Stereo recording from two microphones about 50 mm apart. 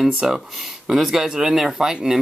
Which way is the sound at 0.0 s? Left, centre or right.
Centre.